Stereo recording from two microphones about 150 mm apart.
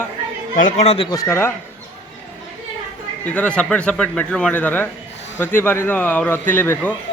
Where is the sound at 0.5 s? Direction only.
60° left (ahead or behind).